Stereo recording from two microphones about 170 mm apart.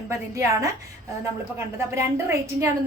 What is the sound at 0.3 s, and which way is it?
A woman's voice, 20° right (ahead or behind).